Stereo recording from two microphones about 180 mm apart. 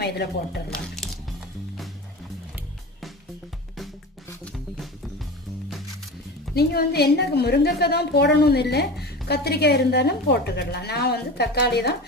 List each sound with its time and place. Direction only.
0.0 s speech: 65° left (ahead or behind)
0.7 s squish: centre (ahead or behind)
6.5 s a woman's voice: 60° left (ahead or behind)